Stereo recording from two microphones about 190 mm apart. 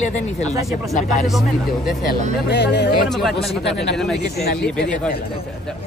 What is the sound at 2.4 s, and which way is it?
Speech, 65° left (ahead or behind).